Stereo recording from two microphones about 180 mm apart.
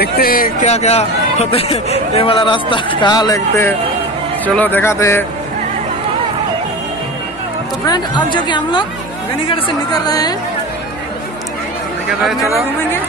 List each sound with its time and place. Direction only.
0.0 s speech: 55° left (ahead or behind)
0.7 s speech: 35° left (ahead or behind); by 5.2 s 15° left (ahead or behind)
7.8 s speech: 25° left (ahead or behind)
10.0 s speech: 20° left (ahead or behind)